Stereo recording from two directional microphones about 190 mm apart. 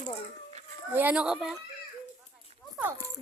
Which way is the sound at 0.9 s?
5° right (ahead or behind).